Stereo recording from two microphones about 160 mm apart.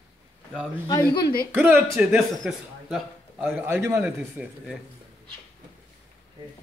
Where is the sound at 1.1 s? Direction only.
70° left (ahead or behind).